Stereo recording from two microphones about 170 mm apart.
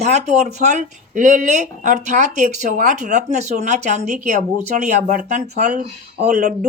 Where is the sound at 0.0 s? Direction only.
40° right (ahead or behind).